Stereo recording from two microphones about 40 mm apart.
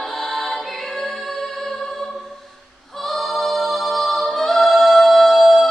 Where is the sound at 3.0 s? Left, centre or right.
Centre.